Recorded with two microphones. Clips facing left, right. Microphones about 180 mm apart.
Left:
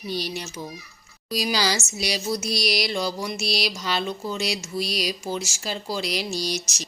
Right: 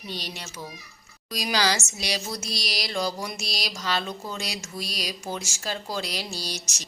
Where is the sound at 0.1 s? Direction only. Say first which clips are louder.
Left 7 dB; 10° left (ahead or behind).